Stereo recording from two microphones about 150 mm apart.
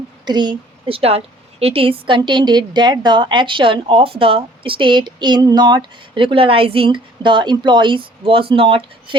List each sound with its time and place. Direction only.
0.3 s a woman's voice: 30° right (ahead or behind)